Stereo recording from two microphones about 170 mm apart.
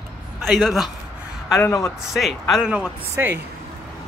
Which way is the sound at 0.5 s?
Centre (ahead or behind).